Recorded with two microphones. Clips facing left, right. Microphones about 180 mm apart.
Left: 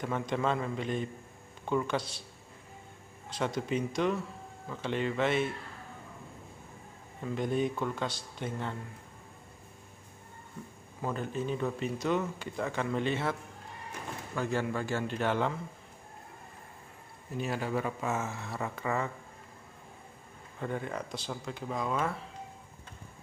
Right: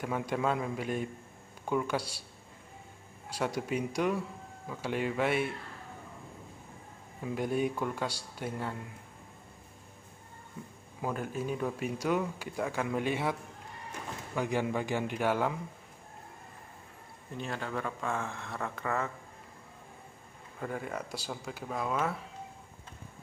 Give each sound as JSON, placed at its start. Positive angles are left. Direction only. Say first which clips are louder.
{"t": 0.0, "sound": "speech", "louder": "even", "side_deg": -10}
{"t": 3.3, "sound": "speech", "louder": "left 1 dB", "side_deg": -10}
{"t": 7.2, "sound": "speech", "louder": "even", "side_deg": -10}
{"t": 11.0, "sound": "speech", "louder": "even", "side_deg": -10}
{"t": 17.4, "sound": "speech", "louder": "left 4 dB", "side_deg": 10}
{"t": 20.5, "sound": "speech", "louder": "left 1 dB", "side_deg": -5}